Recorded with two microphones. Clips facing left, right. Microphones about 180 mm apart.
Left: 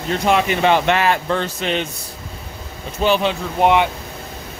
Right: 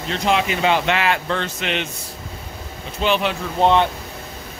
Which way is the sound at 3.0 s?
40° left (ahead or behind).